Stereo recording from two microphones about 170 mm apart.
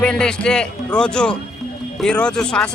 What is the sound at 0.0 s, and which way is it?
Speech, 5° left (ahead or behind).